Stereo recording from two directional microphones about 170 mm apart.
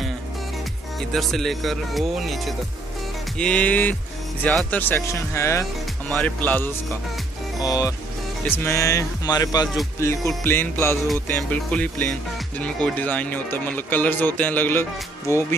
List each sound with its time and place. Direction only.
1.1 s speech: centre (ahead or behind)
7.6 s speech: 20° left (ahead or behind)